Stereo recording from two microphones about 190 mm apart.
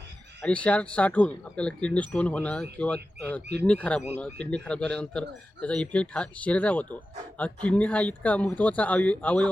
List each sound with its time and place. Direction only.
0.4 s speech: 5° left (ahead or behind)